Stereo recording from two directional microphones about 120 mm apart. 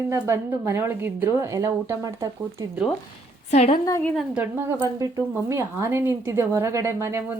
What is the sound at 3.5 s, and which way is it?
Speech, 60° left (ahead or behind).